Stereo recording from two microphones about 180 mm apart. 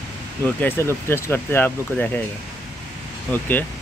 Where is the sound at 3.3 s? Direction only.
10° left (ahead or behind).